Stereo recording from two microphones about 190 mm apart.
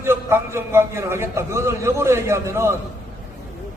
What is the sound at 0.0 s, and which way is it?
A man's voice, 10° right (ahead or behind).